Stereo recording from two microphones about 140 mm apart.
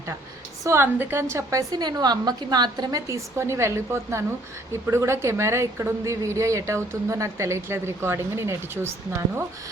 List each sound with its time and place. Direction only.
0.6 s a woman's voice: 20° right (ahead or behind)